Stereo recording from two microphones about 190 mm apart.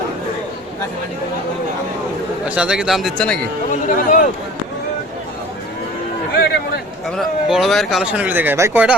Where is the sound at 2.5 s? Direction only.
5° right (ahead or behind).